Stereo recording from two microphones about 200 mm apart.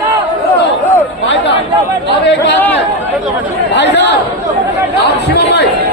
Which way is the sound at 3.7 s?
60° left (ahead or behind).